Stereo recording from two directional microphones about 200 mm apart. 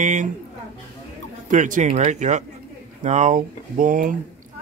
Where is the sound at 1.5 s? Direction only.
40° right (ahead or behind).